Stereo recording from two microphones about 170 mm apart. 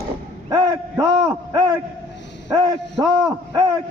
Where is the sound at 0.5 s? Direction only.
25° right (ahead or behind).